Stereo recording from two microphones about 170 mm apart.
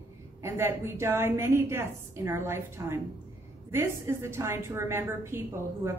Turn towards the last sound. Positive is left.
turn(degrees=-15)  # may be behind; listen again after turning